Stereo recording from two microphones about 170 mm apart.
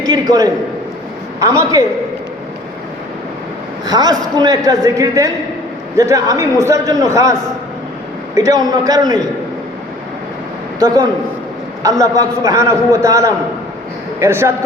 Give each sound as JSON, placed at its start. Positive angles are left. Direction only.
{"t": 0.0, "sound": "a sound", "side_deg": -20}
{"t": 1.4, "sound": "a man's voice", "side_deg": -20}
{"t": 3.8, "sound": "a man's voice", "side_deg": -25}
{"t": 8.4, "sound": "a man's voice", "side_deg": -20}
{"t": 10.8, "sound": "a man's voice", "side_deg": -25}